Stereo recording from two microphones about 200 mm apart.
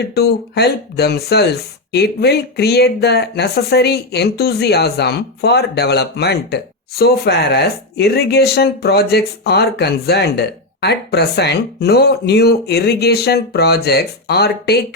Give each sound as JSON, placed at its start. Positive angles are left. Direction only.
{"t": 0.1, "sound": "speech", "side_deg": 55}